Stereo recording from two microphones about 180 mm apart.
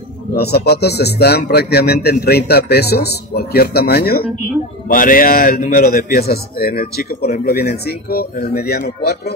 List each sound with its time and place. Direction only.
0.3 s a man's voice: 65° left (ahead or behind)